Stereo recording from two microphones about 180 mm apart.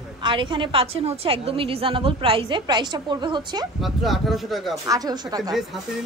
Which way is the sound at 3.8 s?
Centre (ahead or behind).